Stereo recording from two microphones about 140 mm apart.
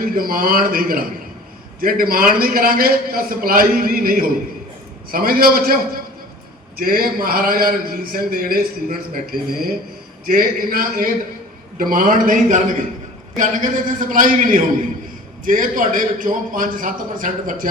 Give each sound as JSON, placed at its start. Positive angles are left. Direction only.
{"t": 0.0, "sound": "a man's voice", "side_deg": -90}
{"t": 11.8, "sound": "a man's voice", "side_deg": -75}